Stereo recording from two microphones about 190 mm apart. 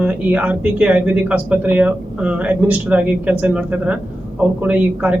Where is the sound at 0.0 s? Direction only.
5° right (ahead or behind).